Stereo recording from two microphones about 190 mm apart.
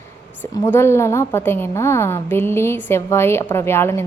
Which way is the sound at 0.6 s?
15° left (ahead or behind).